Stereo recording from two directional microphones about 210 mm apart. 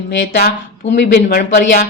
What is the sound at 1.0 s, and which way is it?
Speech, 45° left (ahead or behind).